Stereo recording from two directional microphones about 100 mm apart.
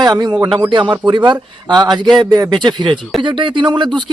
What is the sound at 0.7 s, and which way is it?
Speech, 55° right (ahead or behind).